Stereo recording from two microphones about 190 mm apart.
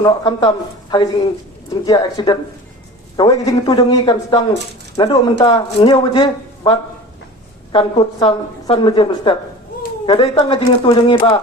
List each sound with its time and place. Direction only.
0.0 s speech: 25° left (ahead or behind)